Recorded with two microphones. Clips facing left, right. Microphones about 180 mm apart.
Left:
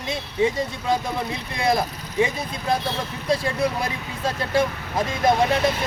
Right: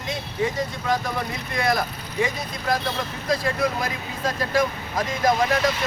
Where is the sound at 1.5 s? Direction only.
25° left (ahead or behind).